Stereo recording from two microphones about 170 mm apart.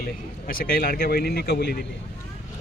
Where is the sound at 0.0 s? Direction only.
60° left (ahead or behind).